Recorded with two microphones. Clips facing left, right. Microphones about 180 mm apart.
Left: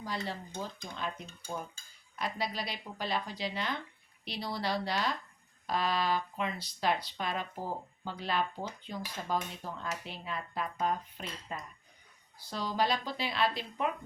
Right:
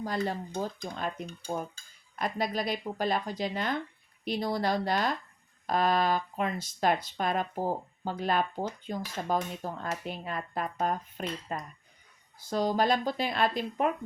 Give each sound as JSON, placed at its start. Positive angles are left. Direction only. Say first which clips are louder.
{"t": 0.0, "sound": "speech", "louder": "right 6 dB", "side_deg": -50}